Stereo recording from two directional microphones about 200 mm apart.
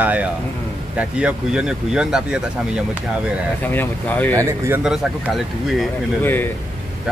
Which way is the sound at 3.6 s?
10° left (ahead or behind).